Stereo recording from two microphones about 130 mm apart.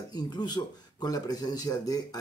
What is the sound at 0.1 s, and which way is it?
Speech, 35° left (ahead or behind).